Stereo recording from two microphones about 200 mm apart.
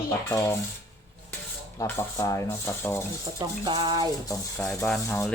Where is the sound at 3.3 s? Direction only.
20° right (ahead or behind).